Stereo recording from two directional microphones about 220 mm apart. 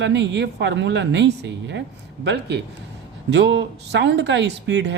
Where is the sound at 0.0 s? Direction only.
55° right (ahead or behind).